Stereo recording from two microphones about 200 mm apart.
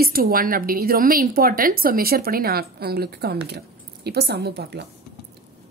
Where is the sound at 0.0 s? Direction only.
50° right (ahead or behind).